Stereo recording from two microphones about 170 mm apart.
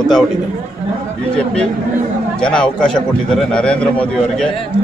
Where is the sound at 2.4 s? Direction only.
5° left (ahead or behind).